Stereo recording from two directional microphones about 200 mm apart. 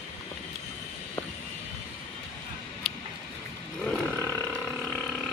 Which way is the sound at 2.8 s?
Centre (ahead or behind).